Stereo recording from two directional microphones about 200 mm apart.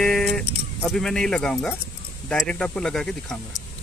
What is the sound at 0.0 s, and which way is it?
Music, centre (ahead or behind).